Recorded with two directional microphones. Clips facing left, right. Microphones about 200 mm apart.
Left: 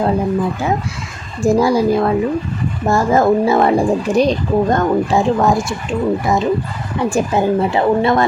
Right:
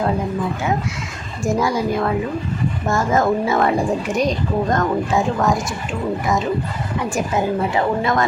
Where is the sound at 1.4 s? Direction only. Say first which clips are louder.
Left 6 dB; 35° left (ahead or behind).